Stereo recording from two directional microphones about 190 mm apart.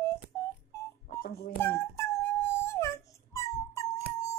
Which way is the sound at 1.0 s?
55° left (ahead or behind).